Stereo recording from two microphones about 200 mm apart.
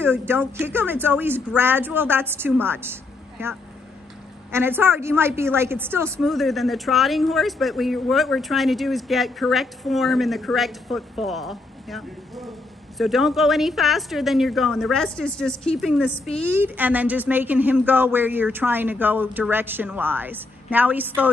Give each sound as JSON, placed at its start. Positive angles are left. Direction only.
{"t": 0.3, "sound": "a woman's voice", "side_deg": -10}
{"t": 6.1, "sound": "a woman's voice", "side_deg": 0}